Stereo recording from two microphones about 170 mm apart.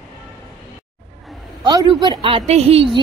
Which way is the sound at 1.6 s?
25° right (ahead or behind).